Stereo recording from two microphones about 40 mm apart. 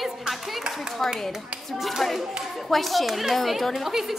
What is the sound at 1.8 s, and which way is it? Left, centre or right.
A woman's voice, centre.